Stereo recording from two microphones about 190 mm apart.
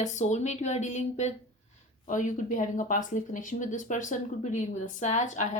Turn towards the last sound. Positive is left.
turn(degrees=40)  # may be behind; listen again after turning